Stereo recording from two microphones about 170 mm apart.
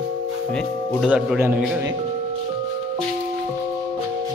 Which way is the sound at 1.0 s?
5° right (ahead or behind).